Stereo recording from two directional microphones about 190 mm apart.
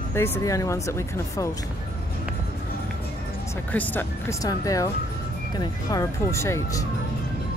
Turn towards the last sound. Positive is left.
turn(degrees=15)  # may be behind; listen again after turning